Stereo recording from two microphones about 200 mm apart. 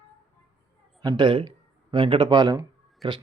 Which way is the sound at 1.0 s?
20° right (ahead or behind).